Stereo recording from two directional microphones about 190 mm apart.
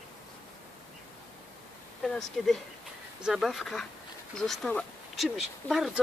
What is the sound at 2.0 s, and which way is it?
Speech, centre (ahead or behind).